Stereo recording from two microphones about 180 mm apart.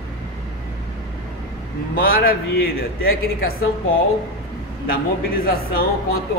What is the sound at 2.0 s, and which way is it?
A man's voice, 55° left (ahead or behind).